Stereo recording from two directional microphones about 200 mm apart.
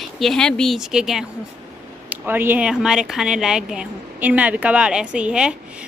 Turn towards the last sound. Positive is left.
turn(degrees=-5)  # may be behind; listen again after turning